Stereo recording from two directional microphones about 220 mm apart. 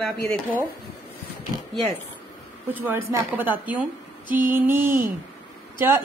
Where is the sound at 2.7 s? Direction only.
10° right (ahead or behind).